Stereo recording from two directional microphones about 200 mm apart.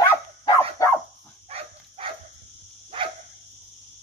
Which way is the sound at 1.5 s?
30° right (ahead or behind).